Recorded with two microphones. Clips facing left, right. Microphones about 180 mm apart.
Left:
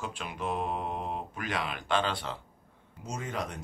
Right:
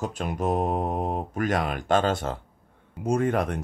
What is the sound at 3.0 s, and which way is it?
Speech, 55° right (ahead or behind).